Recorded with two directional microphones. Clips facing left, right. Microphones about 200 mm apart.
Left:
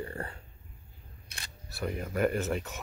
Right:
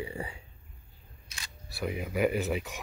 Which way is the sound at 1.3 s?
60° left (ahead or behind).